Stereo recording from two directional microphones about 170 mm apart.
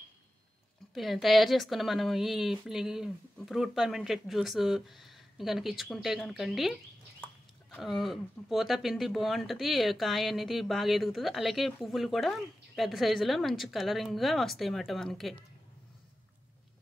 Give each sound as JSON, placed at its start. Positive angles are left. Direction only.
{"t": 0.9, "sound": "speech", "side_deg": 0}
{"t": 7.7, "sound": "speech", "side_deg": 0}